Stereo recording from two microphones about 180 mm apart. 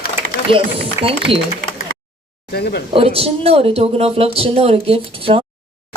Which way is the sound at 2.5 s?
65° left (ahead or behind).